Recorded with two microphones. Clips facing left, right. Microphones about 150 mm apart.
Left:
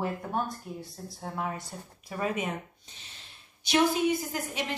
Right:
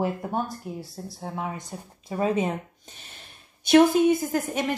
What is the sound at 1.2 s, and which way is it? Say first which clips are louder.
A woman's voice: right 1 dB; 20° right (ahead or behind).